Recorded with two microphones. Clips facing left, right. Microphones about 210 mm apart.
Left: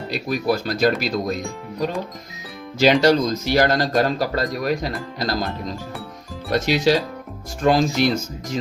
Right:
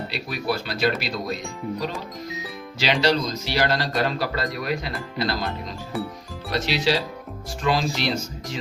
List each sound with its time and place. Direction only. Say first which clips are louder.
0.1 s speech: left 8 dB; 45° left (ahead or behind)
2.7 s speech: left 6 dB; 50° left (ahead or behind)
6.5 s speech: left 5 dB; 45° left (ahead or behind)